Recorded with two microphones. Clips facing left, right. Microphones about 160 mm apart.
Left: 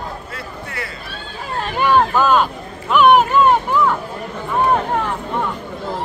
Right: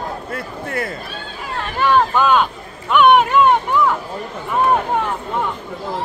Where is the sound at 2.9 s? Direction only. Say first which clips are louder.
Even; centre (ahead or behind).